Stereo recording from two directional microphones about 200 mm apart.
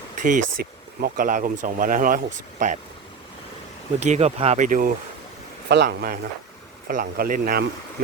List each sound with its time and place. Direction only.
0.2 s speech: 40° right (ahead or behind)
4.0 s speech: 35° right (ahead or behind)
5.6 s speech: 60° right (ahead or behind)